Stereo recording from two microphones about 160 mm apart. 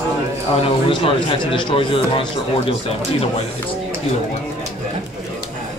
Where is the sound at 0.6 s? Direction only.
35° left (ahead or behind).